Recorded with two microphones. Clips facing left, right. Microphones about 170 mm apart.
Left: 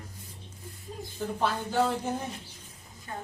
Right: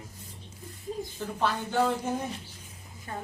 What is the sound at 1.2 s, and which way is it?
Speech, 10° left (ahead or behind).